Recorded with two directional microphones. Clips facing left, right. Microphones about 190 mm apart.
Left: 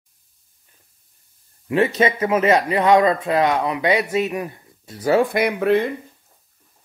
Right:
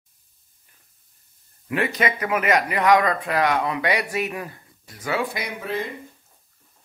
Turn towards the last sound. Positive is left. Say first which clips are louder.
# left 11 dB
turn(degrees=65)  # may be behind; listen again after turning